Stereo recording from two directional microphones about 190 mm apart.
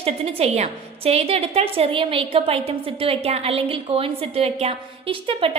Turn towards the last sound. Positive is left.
turn(degrees=-30)  # may be behind; listen again after turning